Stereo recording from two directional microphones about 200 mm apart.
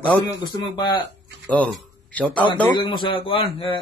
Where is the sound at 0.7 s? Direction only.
20° left (ahead or behind).